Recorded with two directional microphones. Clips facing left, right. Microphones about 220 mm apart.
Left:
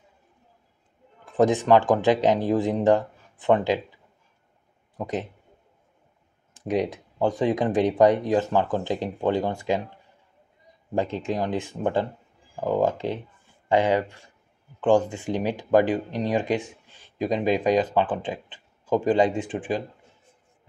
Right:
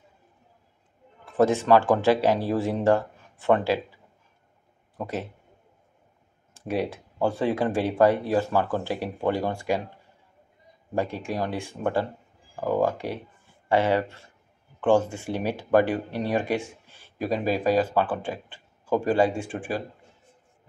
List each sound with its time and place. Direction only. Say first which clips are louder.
1.2 s speech: left 1 dB; 15° left (ahead or behind)
4.9 s speech: left 2 dB; 15° left (ahead or behind)
6.5 s speech: left 3 dB; 15° left (ahead or behind)
11.0 s speech: left 2 dB; 20° left (ahead or behind)